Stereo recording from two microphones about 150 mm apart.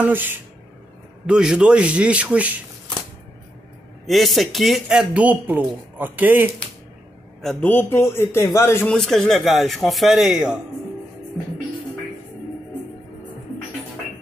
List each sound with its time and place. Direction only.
0.0 s a man's voice: 15° right (ahead or behind)
4.0 s a man's voice: centre (ahead or behind)
7.6 s a man's voice: 15° left (ahead or behind)
8.9 s a man's voice: 5° left (ahead or behind)